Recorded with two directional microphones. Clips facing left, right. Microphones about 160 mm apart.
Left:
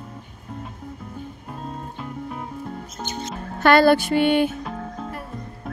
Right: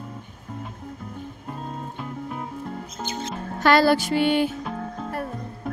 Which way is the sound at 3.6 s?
55° left (ahead or behind).